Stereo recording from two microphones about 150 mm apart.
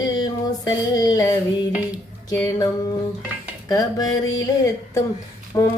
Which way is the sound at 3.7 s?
25° left (ahead or behind).